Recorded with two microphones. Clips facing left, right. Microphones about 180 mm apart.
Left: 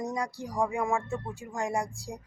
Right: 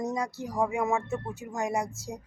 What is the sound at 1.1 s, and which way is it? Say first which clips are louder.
Speech: right 2 dB; 20° right (ahead or behind).